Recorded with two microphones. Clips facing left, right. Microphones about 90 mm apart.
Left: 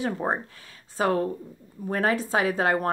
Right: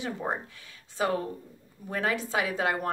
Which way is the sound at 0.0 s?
40° left (ahead or behind).